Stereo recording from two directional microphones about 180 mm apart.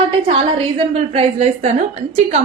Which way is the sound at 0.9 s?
35° right (ahead or behind).